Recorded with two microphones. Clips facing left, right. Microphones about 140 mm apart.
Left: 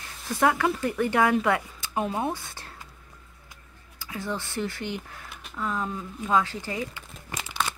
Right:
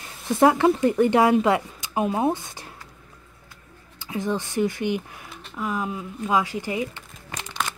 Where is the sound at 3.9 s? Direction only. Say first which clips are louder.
Right 6 dB; 20° right (ahead or behind).